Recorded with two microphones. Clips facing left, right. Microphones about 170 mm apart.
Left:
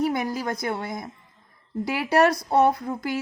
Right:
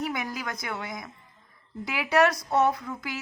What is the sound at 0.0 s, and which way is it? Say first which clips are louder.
A woman's voice: left 7 dB; 35° left (ahead or behind).